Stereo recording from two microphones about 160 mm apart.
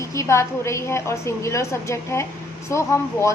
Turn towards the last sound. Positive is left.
turn(degrees=20)  # may be behind; listen again after turning